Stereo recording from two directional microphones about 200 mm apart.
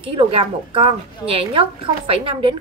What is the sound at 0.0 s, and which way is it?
A woman's voice, 30° right (ahead or behind).